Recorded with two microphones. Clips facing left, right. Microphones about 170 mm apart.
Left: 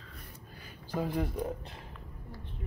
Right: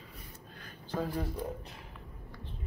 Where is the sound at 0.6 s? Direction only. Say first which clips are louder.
Left 1 dB; 15° left (ahead or behind).